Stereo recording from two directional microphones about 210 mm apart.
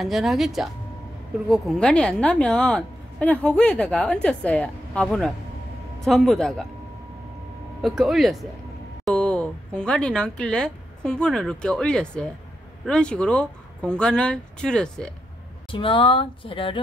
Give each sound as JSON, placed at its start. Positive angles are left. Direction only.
{"t": 0.0, "sound": "a woman's voice", "side_deg": 0}
{"t": 7.8, "sound": "a woman's voice", "side_deg": 0}
{"t": 15.7, "sound": "speech", "side_deg": 25}